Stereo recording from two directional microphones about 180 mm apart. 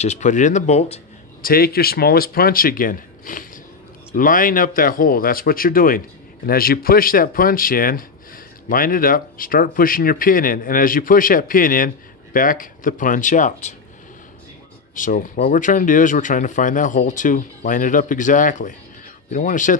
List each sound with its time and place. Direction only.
0.0 s speech: 40° left (ahead or behind)
1.4 s speech: 55° left (ahead or behind)
15.0 s speech: 45° left (ahead or behind)